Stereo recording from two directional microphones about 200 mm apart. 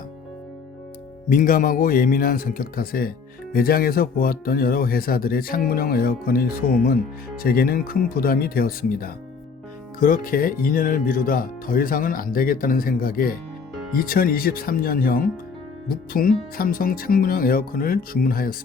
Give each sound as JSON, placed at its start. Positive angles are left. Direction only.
{"t": 1.3, "sound": "speech", "side_deg": 40}